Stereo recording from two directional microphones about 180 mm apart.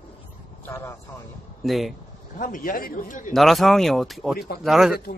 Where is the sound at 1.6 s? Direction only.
Centre (ahead or behind).